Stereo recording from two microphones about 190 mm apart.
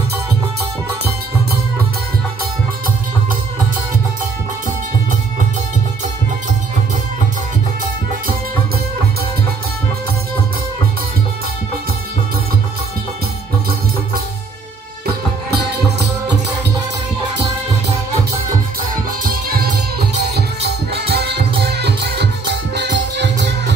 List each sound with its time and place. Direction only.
19.2 s music: 50° right (ahead or behind)